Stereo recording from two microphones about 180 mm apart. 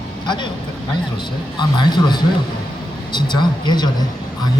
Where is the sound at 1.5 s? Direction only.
25° left (ahead or behind).